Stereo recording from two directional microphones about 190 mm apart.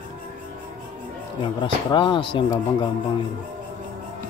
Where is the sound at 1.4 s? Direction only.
25° left (ahead or behind).